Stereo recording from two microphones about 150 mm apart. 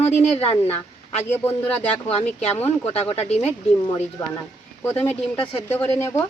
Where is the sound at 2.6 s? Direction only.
15° left (ahead or behind).